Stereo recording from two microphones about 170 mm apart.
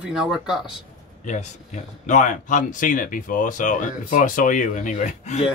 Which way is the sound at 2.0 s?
45° left (ahead or behind).